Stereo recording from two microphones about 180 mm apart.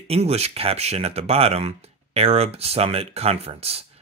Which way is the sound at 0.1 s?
35° right (ahead or behind).